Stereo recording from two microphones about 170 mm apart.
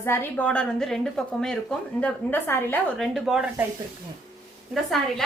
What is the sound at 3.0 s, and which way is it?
Speech, centre (ahead or behind).